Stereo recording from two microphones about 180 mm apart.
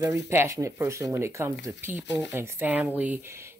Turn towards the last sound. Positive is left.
turn(degrees=-15)  # may be behind; listen again after turning